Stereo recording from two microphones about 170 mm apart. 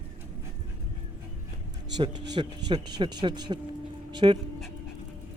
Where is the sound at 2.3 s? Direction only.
25° right (ahead or behind).